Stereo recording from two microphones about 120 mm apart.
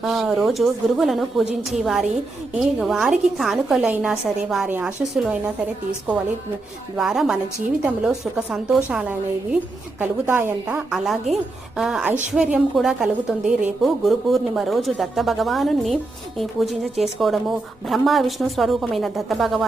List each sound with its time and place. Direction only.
0.0 s a woman's voice: centre (ahead or behind)
6.9 s a woman's voice: 5° right (ahead or behind)